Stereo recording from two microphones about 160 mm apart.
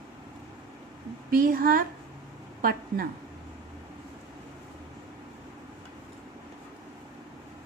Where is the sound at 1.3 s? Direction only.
60° right (ahead or behind).